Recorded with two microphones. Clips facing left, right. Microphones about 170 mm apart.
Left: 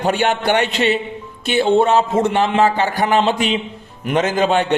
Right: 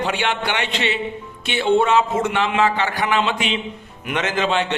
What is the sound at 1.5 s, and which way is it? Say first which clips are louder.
A man's voice: left 3 dB; 35° left (ahead or behind).